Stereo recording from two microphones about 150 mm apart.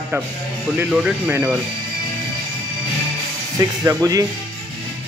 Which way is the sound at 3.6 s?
20° right (ahead or behind).